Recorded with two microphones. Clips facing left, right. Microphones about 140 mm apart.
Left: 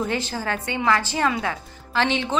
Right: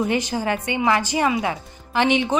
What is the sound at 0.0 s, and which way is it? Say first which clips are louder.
Speech: right 4 dB; 15° right (ahead or behind).